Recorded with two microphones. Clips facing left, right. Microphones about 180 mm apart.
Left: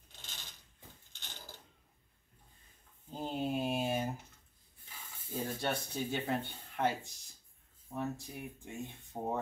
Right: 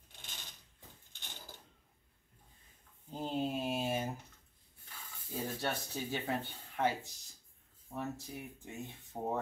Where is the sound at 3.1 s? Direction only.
Centre (ahead or behind).